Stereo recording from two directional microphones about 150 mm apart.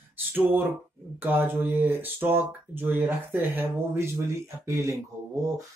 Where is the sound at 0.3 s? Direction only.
15° right (ahead or behind).